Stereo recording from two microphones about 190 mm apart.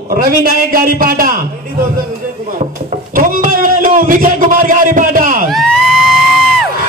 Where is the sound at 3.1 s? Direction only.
45° right (ahead or behind).